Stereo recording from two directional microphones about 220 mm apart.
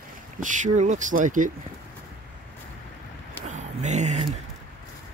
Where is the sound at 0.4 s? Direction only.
35° right (ahead or behind).